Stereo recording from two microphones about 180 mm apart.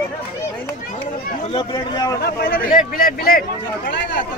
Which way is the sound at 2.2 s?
60° left (ahead or behind).